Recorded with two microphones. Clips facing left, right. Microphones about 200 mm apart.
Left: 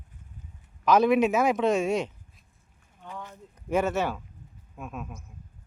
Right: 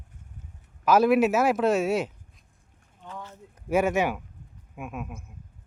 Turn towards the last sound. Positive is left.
turn(degrees=-10)  # may be behind; listen again after turning